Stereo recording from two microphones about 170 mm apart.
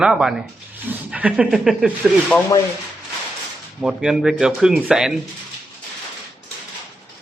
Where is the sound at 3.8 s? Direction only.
5° right (ahead or behind).